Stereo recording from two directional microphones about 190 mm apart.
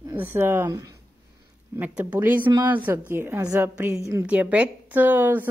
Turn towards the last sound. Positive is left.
turn(degrees=-10)  # may be behind; listen again after turning